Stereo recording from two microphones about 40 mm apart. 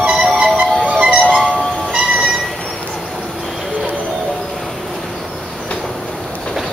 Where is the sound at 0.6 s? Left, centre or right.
Right.